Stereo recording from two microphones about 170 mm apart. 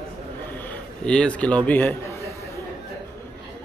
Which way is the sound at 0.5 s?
10° left (ahead or behind).